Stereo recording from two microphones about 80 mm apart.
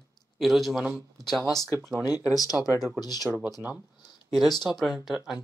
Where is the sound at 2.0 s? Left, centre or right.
Left.